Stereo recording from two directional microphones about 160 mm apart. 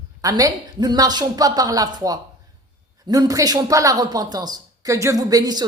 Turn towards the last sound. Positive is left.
turn(degrees=-25)  # may be behind; listen again after turning